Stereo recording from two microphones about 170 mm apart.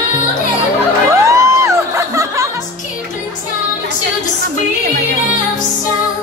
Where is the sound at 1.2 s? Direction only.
15° right (ahead or behind).